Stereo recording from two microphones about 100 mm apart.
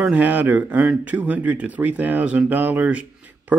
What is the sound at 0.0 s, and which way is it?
A man's voice, 15° right (ahead or behind).